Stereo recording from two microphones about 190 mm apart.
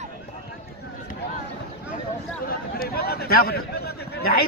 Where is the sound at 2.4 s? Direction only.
55° left (ahead or behind).